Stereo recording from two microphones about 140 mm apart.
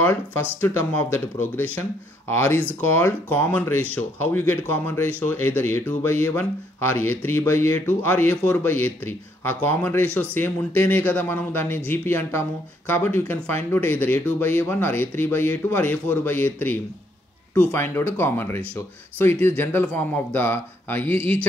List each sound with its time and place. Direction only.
0.0 s a man's voice: 15° left (ahead or behind)